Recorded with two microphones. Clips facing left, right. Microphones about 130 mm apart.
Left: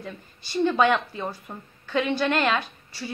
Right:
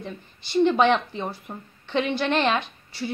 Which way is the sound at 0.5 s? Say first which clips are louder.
Right 2 dB; 20° right (ahead or behind).